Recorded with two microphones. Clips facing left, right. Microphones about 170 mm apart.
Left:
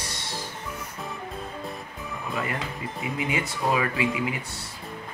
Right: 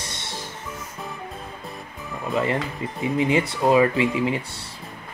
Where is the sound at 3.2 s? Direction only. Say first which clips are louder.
Right 7 dB; 30° right (ahead or behind).